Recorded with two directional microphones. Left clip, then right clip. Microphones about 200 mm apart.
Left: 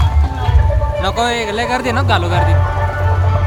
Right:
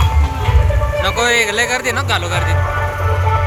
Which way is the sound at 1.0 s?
25° left (ahead or behind).